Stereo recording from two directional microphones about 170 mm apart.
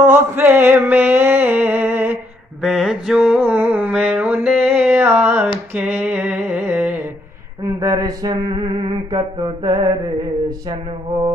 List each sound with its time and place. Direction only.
0.0 s mantra: 10° right (ahead or behind)
5.8 s a sound: 10° right (ahead or behind)
7.8 s mantra: 20° right (ahead or behind)